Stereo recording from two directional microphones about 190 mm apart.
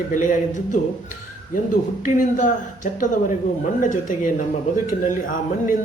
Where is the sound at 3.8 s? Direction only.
45° left (ahead or behind).